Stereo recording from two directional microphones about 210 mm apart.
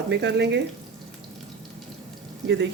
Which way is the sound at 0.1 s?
55° right (ahead or behind).